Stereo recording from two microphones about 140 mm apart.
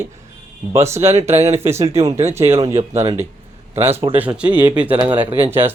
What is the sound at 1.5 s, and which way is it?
Speech, 15° right (ahead or behind).